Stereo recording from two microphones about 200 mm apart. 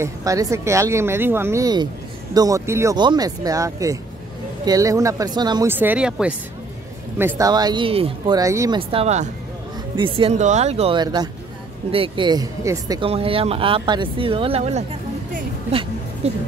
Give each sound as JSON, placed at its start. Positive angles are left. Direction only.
{"t": 0.0, "sound": "speech", "side_deg": -15}
{"t": 8.4, "sound": "speech", "side_deg": -15}
{"t": 8.7, "sound": "speech", "side_deg": -30}
{"t": 16.2, "sound": "speech", "side_deg": -30}